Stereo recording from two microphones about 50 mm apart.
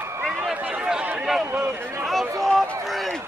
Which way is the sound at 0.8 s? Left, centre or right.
Centre.